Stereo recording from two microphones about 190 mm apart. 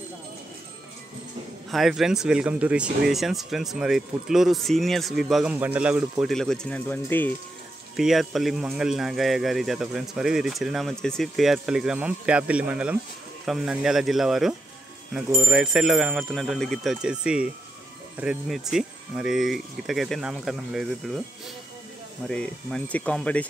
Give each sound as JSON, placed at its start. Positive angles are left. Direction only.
{"t": 1.7, "sound": "speech", "side_deg": 0}
{"t": 7.9, "sound": "speech", "side_deg": 0}
{"t": 22.3, "sound": "speech", "side_deg": 5}